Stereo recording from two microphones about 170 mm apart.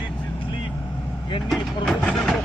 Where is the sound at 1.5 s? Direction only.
Centre (ahead or behind).